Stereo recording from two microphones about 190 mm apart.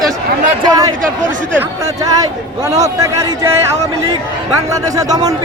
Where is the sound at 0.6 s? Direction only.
20° right (ahead or behind).